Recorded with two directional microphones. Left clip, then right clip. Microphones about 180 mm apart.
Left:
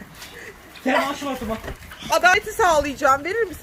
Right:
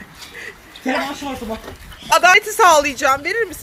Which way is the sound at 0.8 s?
10° left (ahead or behind).